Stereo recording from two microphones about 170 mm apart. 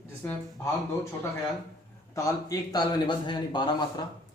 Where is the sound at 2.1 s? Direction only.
20° left (ahead or behind).